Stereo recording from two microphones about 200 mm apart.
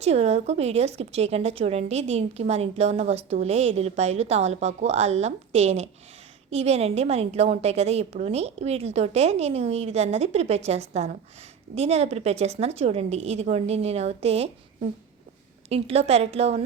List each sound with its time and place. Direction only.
0.0 s a woman's voice: 30° right (ahead or behind)